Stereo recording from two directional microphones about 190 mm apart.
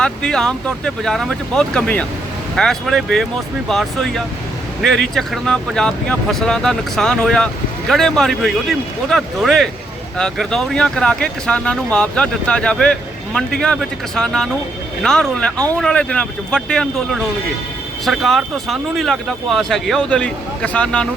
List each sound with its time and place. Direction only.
0.0 s speech: 5° left (ahead or behind)